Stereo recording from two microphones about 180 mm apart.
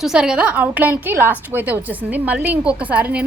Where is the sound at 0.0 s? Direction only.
5° right (ahead or behind).